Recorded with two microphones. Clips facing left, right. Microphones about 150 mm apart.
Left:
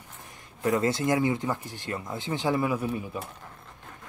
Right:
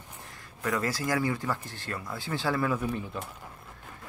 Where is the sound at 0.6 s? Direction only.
25° left (ahead or behind).